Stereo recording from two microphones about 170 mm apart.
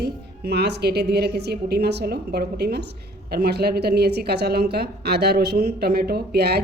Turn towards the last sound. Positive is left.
turn(degrees=-70)  # may be behind; listen again after turning